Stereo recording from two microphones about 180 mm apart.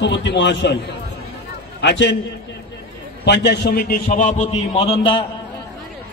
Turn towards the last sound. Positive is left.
turn(degrees=30)  # may be behind; listen again after turning